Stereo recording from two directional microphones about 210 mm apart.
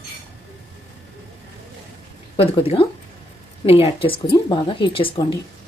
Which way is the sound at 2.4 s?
25° left (ahead or behind).